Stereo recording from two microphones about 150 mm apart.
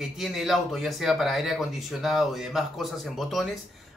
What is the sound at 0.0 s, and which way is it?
Speech, centre (ahead or behind).